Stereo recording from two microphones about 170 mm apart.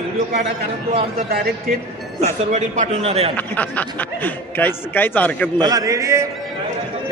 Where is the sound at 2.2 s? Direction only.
45° right (ahead or behind).